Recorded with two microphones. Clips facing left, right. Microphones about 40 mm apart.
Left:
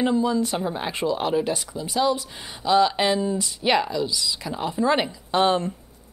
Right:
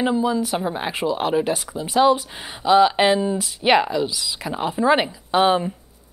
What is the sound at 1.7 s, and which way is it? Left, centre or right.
Speech, right.